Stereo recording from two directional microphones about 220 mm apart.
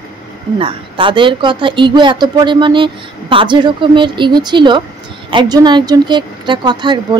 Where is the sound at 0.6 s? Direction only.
25° right (ahead or behind).